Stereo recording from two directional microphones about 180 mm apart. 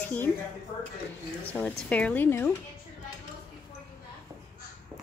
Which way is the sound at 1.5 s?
5° left (ahead or behind).